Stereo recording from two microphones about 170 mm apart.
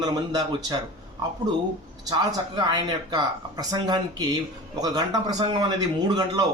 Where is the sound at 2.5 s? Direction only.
25° right (ahead or behind).